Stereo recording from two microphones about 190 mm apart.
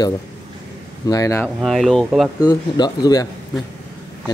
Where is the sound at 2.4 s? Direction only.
20° left (ahead or behind).